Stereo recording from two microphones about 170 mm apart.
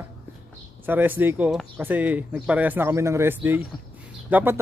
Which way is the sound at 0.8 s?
10° right (ahead or behind).